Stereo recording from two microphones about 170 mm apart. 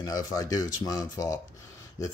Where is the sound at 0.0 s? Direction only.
20° left (ahead or behind).